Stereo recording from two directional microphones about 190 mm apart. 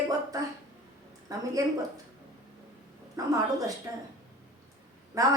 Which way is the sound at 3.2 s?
20° right (ahead or behind).